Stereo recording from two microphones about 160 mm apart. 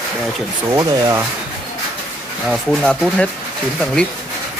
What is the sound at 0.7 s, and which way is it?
Speech, 20° right (ahead or behind).